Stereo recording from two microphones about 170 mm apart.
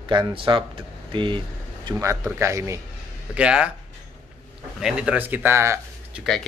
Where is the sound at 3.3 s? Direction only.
5° right (ahead or behind).